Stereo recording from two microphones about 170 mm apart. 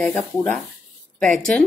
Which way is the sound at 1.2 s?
5° left (ahead or behind).